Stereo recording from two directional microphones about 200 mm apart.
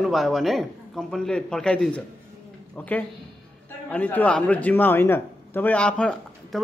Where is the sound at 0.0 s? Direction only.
Centre (ahead or behind).